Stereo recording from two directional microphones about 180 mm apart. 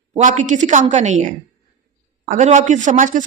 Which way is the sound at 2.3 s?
45° right (ahead or behind).